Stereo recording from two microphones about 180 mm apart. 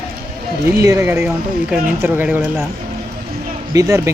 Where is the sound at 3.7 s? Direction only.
15° right (ahead or behind).